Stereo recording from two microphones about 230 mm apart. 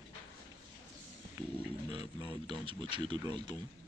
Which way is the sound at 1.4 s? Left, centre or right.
Centre.